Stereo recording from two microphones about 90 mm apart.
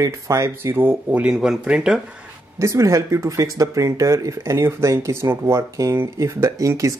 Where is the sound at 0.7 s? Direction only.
20° right (ahead or behind).